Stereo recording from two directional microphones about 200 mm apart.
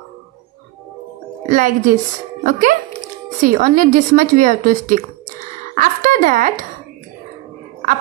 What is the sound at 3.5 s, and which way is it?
A woman's voice, 40° right (ahead or behind).